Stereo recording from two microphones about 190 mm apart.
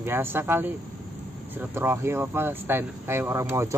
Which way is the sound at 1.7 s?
10° right (ahead or behind).